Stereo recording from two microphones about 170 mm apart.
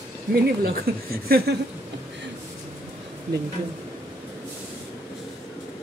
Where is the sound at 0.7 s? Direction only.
60° right (ahead or behind).